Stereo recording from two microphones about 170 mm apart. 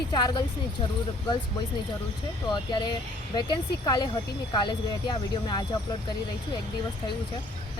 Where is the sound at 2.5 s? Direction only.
25° left (ahead or behind).